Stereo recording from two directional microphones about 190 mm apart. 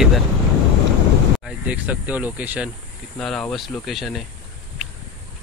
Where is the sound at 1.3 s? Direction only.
5° right (ahead or behind).